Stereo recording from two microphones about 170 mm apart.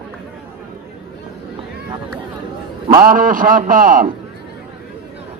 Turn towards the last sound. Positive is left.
turn(degrees=-55)  # may be behind; listen again after turning